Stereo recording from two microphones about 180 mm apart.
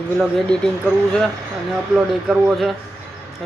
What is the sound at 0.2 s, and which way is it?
Speech, 5° left (ahead or behind).